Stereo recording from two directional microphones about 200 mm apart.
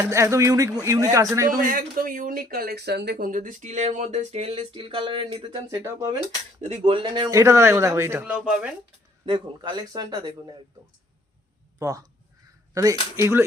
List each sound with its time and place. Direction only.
0.0 s a man's voice: 15° right (ahead or behind)
1.5 s speech: 45° right (ahead or behind); by 6.1 s 15° right (ahead or behind)
6.6 s a man's voice: 30° right (ahead or behind); by 8.7 s 5° right (ahead or behind)
9.2 s speech: 25° right (ahead or behind)
11.8 s a man's voice: 15° right (ahead or behind)